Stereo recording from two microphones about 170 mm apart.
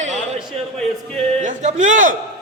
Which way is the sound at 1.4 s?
45° right (ahead or behind).